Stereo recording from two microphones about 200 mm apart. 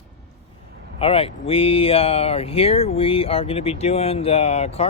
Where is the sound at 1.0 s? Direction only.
30° left (ahead or behind).